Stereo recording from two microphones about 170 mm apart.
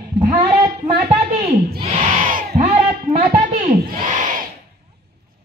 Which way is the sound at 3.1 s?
35° right (ahead or behind).